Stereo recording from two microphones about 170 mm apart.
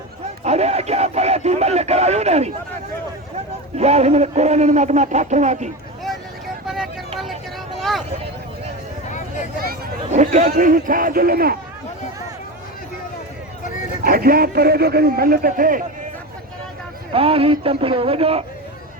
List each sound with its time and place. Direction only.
0.4 s radio: 40° right (ahead or behind)
3.3 s a man's voice: 40° right (ahead or behind)
7.8 s vehicle: centre (ahead or behind)
10.1 s speech: 40° right (ahead or behind)
10.6 s a man's voice: 55° right (ahead or behind)
14.0 s a man's voice: 60° right (ahead or behind)
17.1 s a man's voice: 35° right (ahead or behind)